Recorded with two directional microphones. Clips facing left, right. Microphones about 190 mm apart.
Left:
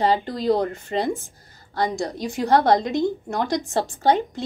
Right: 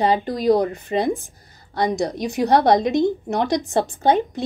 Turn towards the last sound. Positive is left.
turn(degrees=-20)  # may be behind; listen again after turning